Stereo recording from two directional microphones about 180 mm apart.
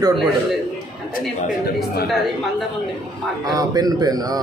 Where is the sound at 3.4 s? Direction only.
20° right (ahead or behind).